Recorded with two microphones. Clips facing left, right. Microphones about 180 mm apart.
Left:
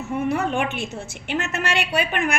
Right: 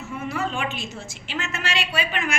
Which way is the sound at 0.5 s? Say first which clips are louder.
Left 5 dB; 60° left (ahead or behind).